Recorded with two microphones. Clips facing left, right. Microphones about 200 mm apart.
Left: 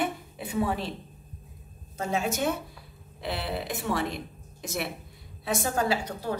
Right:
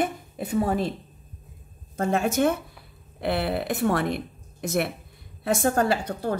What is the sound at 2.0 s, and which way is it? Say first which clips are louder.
A woman's voice: right 6 dB; 55° right (ahead or behind).